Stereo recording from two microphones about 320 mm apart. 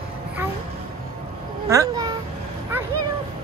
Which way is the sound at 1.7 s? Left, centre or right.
Centre.